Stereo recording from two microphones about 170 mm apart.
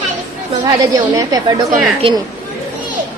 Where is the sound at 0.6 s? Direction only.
20° right (ahead or behind).